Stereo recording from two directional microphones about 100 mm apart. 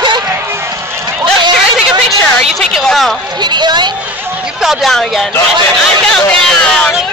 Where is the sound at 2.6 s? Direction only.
5° left (ahead or behind).